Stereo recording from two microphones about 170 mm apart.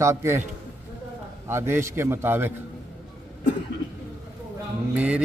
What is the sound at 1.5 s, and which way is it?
Speech, 15° right (ahead or behind).